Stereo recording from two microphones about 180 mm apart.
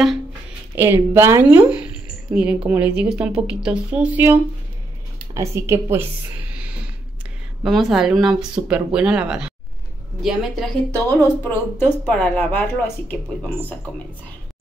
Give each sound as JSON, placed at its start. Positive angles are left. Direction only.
{"t": 0.7, "sound": "speech", "side_deg": -10}
{"t": 6.5, "sound": "a sound", "side_deg": -5}
{"t": 7.6, "sound": "speech", "side_deg": 0}
{"t": 10.9, "sound": "speech", "side_deg": 10}